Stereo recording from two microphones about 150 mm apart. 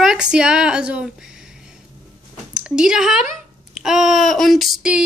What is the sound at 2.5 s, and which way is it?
Speech, 5° right (ahead or behind).